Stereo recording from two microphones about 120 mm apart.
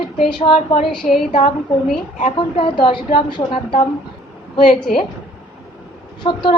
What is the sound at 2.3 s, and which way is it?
A woman's voice, 45° left (ahead or behind).